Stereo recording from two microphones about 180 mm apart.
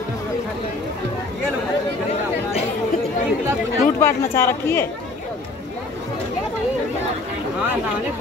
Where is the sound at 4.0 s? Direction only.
15° left (ahead or behind).